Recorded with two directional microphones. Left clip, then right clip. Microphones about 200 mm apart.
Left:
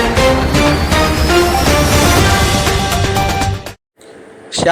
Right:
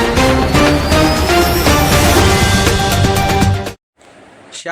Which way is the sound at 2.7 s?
Centre (ahead or behind).